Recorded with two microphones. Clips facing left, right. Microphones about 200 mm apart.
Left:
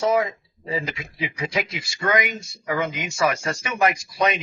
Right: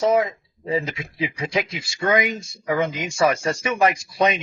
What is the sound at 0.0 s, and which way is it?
Speech, 25° right (ahead or behind).